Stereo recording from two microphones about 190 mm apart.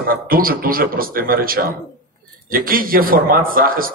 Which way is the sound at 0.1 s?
50° right (ahead or behind).